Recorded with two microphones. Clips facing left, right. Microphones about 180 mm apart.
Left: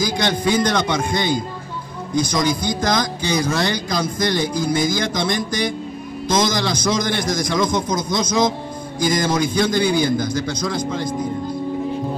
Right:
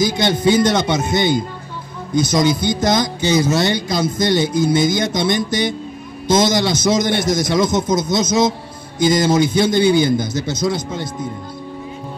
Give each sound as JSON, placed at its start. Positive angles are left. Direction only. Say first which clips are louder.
{"t": 0.0, "sound": "speech", "louder": "right 4 dB", "side_deg": -25}